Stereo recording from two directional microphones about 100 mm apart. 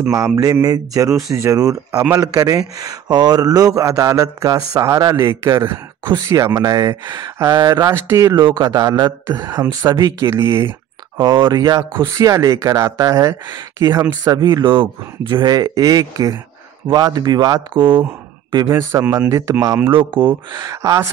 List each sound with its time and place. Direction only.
0.1 s speech: 35° right (ahead or behind)
5.5 s a man's voice: 45° right (ahead or behind); by 8.4 s 30° right (ahead or behind)
8.4 s speech: 45° right (ahead or behind)
10.2 s a man's voice: 25° right (ahead or behind)
11.1 s speech: 50° right (ahead or behind); by 14.1 s 30° right (ahead or behind)
14.2 s speech: 45° right (ahead or behind)
15.5 s speech: 35° right (ahead or behind); by 18.0 s 55° right (ahead or behind)
18.7 s a man's voice: 25° right (ahead or behind)
19.9 s speech: 55° right (ahead or behind)
20.5 s speech: 35° right (ahead or behind)